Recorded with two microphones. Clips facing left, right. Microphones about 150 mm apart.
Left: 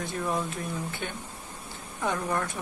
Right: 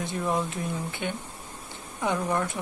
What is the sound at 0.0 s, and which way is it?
Speech, 20° right (ahead or behind).